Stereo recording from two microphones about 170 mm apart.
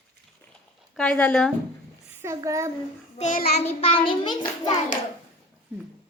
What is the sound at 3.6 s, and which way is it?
Child singing, 35° left (ahead or behind).